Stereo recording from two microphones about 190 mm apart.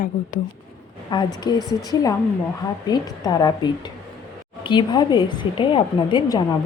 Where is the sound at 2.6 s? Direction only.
20° left (ahead or behind).